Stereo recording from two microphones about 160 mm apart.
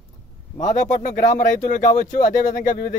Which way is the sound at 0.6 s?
50° left (ahead or behind).